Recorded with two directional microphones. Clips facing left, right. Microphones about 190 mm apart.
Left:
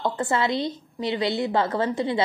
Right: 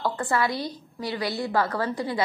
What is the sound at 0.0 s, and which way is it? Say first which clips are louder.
A woman's voice: left 1 dB; 25° left (ahead or behind).